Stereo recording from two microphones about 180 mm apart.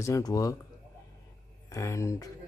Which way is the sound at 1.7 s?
15° left (ahead or behind).